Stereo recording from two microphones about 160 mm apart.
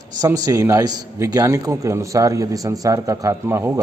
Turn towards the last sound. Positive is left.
turn(degrees=-15)  # may be behind; listen again after turning